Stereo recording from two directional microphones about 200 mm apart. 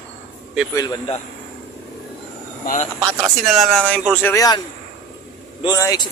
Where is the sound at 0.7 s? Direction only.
20° left (ahead or behind).